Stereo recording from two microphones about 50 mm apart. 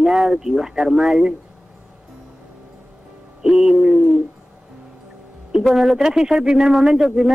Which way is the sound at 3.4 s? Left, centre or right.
Centre.